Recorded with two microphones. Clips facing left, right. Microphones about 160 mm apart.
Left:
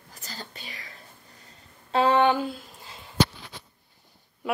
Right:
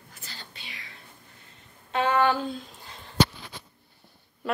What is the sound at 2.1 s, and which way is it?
Speech, 20° left (ahead or behind).